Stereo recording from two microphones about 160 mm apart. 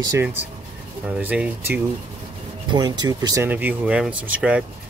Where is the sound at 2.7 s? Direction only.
25° right (ahead or behind).